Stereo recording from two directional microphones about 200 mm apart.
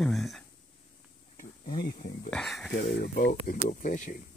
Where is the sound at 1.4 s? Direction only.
40° left (ahead or behind).